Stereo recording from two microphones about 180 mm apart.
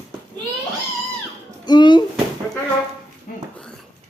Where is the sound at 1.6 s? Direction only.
25° left (ahead or behind).